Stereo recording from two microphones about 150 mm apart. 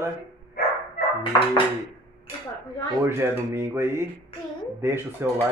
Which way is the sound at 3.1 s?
15° right (ahead or behind).